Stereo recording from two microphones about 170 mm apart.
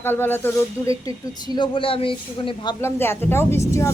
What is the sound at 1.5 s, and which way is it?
A man's voice, 30° left (ahead or behind).